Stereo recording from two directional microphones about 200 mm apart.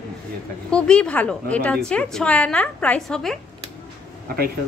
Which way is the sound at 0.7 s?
5° left (ahead or behind).